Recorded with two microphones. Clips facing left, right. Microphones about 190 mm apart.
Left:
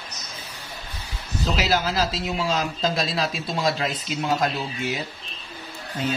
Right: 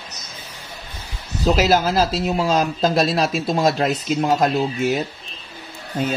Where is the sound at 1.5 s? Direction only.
45° right (ahead or behind).